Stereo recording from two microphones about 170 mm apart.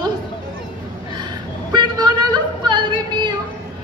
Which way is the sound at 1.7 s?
25° right (ahead or behind).